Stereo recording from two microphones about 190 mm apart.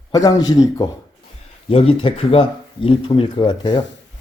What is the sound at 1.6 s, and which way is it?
Speech, 30° left (ahead or behind).